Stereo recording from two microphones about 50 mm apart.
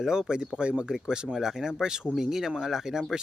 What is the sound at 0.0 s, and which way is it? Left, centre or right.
Speech, centre.